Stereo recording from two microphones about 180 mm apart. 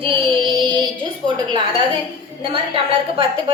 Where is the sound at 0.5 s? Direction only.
25° right (ahead or behind).